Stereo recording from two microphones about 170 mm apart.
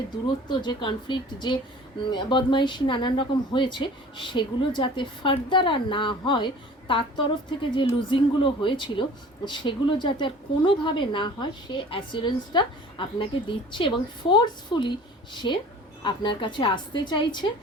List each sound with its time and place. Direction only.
0.4 s speech: 25° left (ahead or behind)